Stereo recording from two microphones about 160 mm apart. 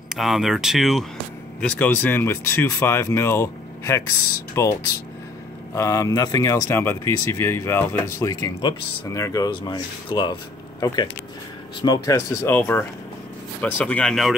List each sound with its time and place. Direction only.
0.1 s speech: centre (ahead or behind)
1.6 s speech: 10° left (ahead or behind)
5.8 s speech: 20° left (ahead or behind)
11.8 s speech: 20° left (ahead or behind); by 14.3 s centre (ahead or behind)